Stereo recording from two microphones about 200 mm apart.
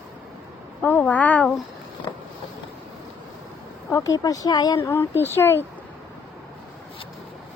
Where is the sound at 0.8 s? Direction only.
10° left (ahead or behind).